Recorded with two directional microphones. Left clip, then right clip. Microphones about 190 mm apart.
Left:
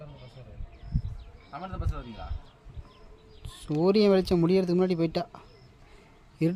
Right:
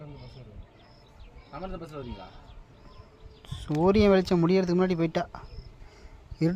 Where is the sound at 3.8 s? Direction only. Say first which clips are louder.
Right 1 dB; centre (ahead or behind).